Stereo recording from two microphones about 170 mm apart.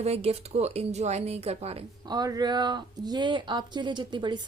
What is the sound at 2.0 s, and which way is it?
A woman's voice, 20° right (ahead or behind).